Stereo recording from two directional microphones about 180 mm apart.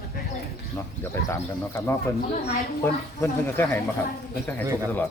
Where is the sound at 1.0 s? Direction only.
15° left (ahead or behind).